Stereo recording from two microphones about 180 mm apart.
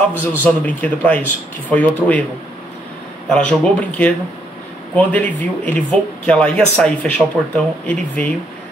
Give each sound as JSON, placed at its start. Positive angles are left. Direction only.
{"t": 0.2, "sound": "speech", "side_deg": 10}
{"t": 3.3, "sound": "speech", "side_deg": 5}